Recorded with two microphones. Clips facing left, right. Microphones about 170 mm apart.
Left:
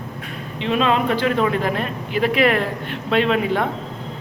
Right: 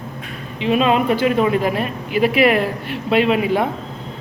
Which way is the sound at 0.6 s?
10° right (ahead or behind).